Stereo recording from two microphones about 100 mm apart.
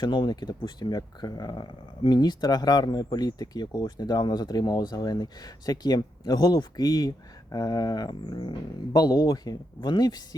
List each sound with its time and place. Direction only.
0.0 s speech: 45° left (ahead or behind)